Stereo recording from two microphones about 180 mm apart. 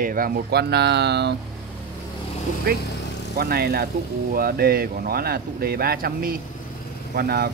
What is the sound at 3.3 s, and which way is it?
Speech, 55° right (ahead or behind).